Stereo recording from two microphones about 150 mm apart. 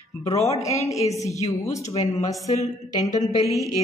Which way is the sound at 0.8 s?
20° left (ahead or behind).